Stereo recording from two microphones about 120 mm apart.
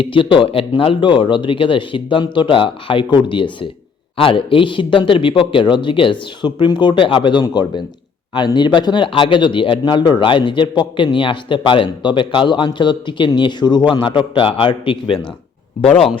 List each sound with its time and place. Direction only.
0.0 s speech: 45° left (ahead or behind)